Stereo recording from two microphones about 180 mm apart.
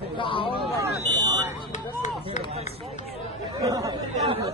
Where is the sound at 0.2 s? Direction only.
30° left (ahead or behind).